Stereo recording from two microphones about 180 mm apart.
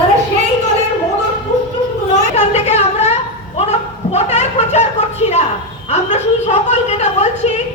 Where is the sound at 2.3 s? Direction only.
40° left (ahead or behind).